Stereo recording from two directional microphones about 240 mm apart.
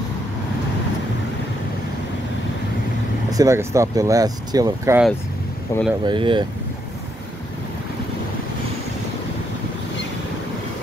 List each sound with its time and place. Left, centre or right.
3.3 s speech: centre
5.7 s speech: centre
6.0 s speech: centre